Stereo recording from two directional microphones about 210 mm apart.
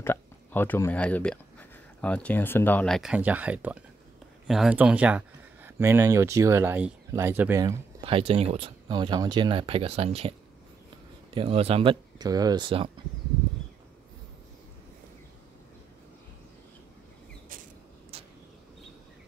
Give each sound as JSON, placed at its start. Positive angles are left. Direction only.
{"t": 0.0, "sound": "speech", "side_deg": 10}
{"t": 8.0, "sound": "speech", "side_deg": -25}
{"t": 11.3, "sound": "speech", "side_deg": -30}